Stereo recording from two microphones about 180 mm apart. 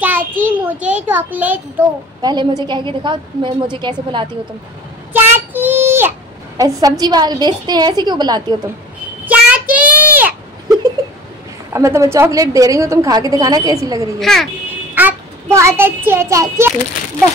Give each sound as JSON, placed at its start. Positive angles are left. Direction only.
{"t": 0.4, "sound": "a child's voice", "side_deg": -10}
{"t": 2.2, "sound": "a woman's voice", "side_deg": -25}
{"t": 5.1, "sound": "child singing", "side_deg": -10}
{"t": 6.6, "sound": "a woman's voice", "side_deg": -20}
{"t": 9.2, "sound": "a sound", "side_deg": -10}
{"t": 11.7, "sound": "a woman's voice", "side_deg": -15}
{"t": 14.2, "sound": "speech", "side_deg": 0}
{"t": 15.0, "sound": "a child's voice", "side_deg": -10}